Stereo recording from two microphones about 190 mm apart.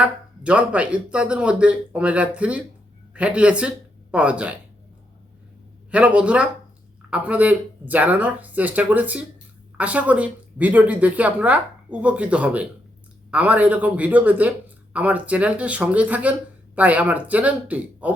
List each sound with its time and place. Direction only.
0.0 s speech: 5° right (ahead or behind)
5.9 s speech: 5° right (ahead or behind)